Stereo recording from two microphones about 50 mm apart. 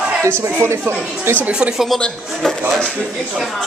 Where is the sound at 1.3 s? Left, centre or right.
Right.